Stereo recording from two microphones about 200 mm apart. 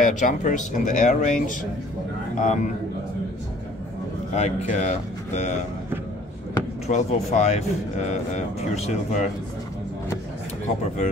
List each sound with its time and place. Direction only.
0.0 s a man's voice: 40° left (ahead or behind)
4.3 s a man's voice: 35° left (ahead or behind)
6.9 s a man's voice: 35° left (ahead or behind)